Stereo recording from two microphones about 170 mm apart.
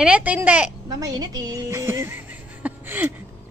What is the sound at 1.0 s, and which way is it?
A woman's voice, 20° right (ahead or behind).